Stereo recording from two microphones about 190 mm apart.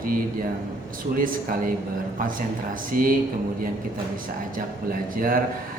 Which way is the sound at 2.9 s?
50° right (ahead or behind).